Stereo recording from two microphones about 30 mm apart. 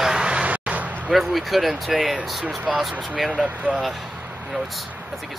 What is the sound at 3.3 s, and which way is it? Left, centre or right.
Speech, right.